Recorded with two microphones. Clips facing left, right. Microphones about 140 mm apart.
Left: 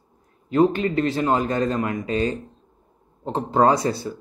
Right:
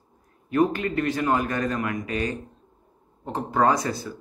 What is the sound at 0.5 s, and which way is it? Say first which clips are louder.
Speech: left 4 dB; 25° left (ahead or behind).